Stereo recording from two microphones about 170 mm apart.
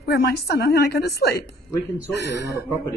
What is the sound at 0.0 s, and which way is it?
A woman's voice, 65° left (ahead or behind).